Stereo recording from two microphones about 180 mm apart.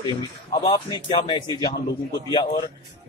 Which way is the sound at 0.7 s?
25° left (ahead or behind).